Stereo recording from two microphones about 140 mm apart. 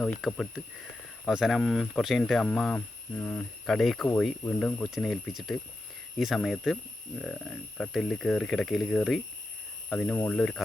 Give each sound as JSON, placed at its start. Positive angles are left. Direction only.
{"t": 0.2, "sound": "speech", "side_deg": 0}